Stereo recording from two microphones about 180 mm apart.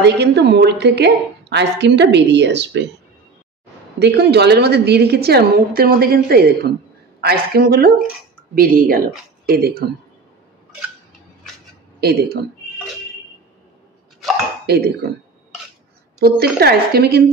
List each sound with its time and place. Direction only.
0.0 s a woman's voice: 70° right (ahead or behind)
4.0 s a woman's voice: 65° right (ahead or behind)
12.0 s a woman's voice: 65° right (ahead or behind)
14.7 s a woman's voice: 60° right (ahead or behind)
16.2 s a woman's voice: 60° right (ahead or behind)